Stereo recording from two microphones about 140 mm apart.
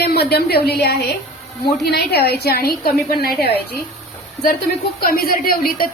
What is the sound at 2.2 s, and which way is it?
A woman's voice, 90° left.